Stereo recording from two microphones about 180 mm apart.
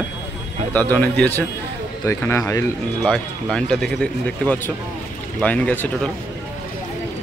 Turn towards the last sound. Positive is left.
turn(degrees=5)  # may be behind; listen again after turning